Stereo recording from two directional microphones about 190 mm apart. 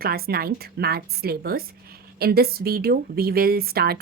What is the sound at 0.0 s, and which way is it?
A woman's voice, 55° right (ahead or behind).